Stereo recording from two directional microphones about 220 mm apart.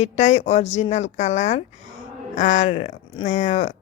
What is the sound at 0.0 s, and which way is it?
Speech, 30° left (ahead or behind).